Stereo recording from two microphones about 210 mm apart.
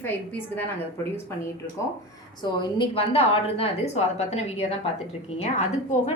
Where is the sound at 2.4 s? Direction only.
20° left (ahead or behind).